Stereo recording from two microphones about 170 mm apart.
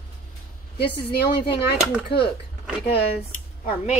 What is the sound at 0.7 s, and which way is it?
Speech, 75° left (ahead or behind).